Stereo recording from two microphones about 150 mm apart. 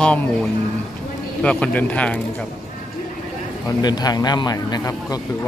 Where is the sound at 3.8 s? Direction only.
25° left (ahead or behind).